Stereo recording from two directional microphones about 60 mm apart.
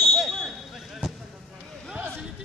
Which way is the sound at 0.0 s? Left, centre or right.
Centre.